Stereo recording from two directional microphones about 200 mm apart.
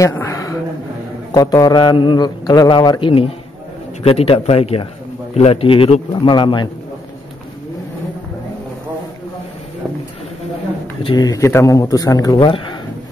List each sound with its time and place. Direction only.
0.0 s a sound: 15° left (ahead or behind)
1.3 s a man's voice: 20° left (ahead or behind)
11.1 s a man's voice: 20° left (ahead or behind)